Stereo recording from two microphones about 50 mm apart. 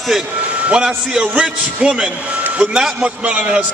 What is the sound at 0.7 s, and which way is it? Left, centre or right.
A man's voice, centre.